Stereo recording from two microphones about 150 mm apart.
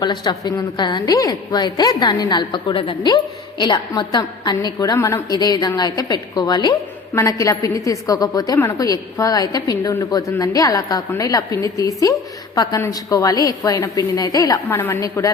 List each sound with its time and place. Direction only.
0.0 s a woman's voice: 30° left (ahead or behind)